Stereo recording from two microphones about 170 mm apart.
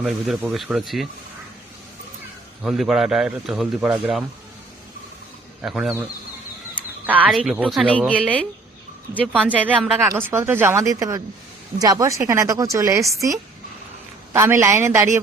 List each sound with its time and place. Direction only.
0.0 s a man's voice: centre (ahead or behind)
2.6 s a man's voice: centre (ahead or behind)
5.6 s a man's voice: 5° right (ahead or behind)
7.9 s speech: 5° left (ahead or behind)
9.3 s speech: 10° right (ahead or behind)